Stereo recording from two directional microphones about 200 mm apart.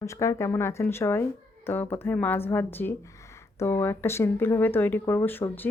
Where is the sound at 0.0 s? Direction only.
15° left (ahead or behind).